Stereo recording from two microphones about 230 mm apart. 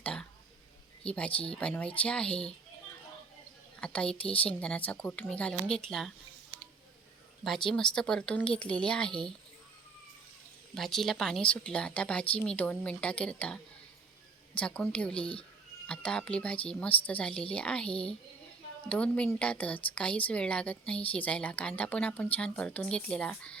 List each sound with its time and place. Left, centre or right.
0.0 s a woman's voice: centre
3.8 s a woman's voice: centre
7.9 s a woman's voice: centre
10.8 s a woman's voice: centre
14.6 s a woman's voice: centre
15.1 s speech: left
15.9 s a woman's voice: centre